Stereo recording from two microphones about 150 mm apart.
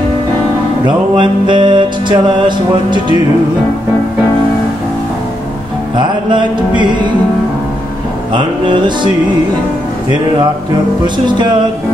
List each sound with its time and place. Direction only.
0.8 s music: 35° right (ahead or behind)
5.9 s music: 30° right (ahead or behind)
8.4 s music: 30° right (ahead or behind)